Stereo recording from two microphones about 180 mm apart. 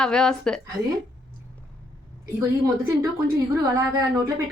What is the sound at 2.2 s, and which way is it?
A woman's voice, 15° right (ahead or behind).